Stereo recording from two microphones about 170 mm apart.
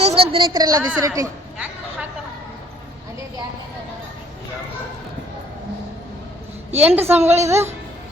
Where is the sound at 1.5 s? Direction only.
10° right (ahead or behind).